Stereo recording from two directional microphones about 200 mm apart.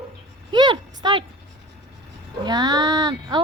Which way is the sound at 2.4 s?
20° right (ahead or behind).